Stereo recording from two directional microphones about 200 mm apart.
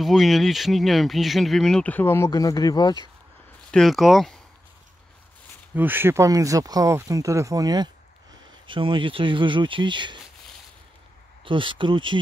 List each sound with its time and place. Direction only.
0.0 s speech: centre (ahead or behind); by 3.1 s 20° left (ahead or behind)
3.7 s speech: centre (ahead or behind)
5.8 s speech: 10° right (ahead or behind)
11.4 s speech: 25° right (ahead or behind)